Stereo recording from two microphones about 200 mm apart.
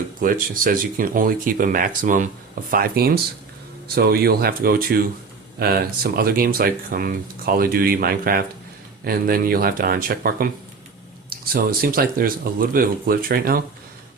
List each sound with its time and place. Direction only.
0.2 s speech: 45° right (ahead or behind)